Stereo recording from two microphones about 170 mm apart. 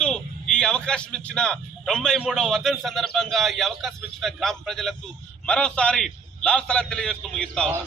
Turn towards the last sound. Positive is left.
turn(degrees=5)  # may be behind; listen again after turning